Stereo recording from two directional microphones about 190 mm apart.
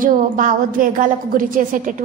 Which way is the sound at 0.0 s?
45° right (ahead or behind).